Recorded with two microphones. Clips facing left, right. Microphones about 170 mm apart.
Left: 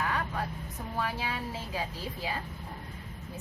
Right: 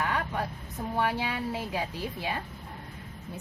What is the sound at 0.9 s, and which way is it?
Speech, 70° right (ahead or behind).